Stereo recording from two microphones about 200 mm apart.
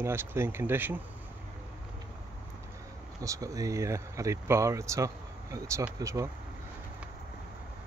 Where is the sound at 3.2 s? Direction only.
15° right (ahead or behind).